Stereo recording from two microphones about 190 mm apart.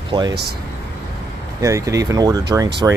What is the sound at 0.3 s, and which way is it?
Speech, 60° right (ahead or behind).